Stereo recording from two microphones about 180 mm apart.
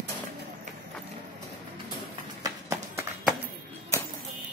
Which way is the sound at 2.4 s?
20° right (ahead or behind).